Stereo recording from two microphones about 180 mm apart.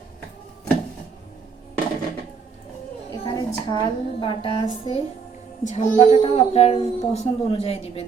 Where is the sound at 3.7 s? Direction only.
25° left (ahead or behind).